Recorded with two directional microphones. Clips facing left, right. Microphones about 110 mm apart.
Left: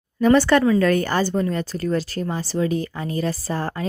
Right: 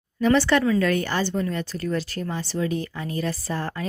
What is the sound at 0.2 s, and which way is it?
Speech, 45° left (ahead or behind).